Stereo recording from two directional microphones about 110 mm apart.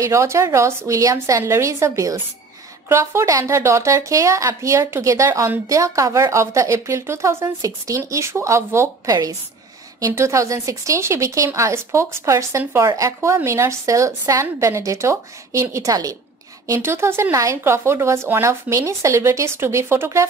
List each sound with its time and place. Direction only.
0.0 s speech: 25° right (ahead or behind)
9.1 s a woman's voice: 35° right (ahead or behind)